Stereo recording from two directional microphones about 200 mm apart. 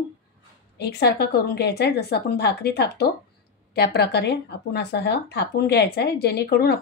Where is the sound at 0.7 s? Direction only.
55° left (ahead or behind).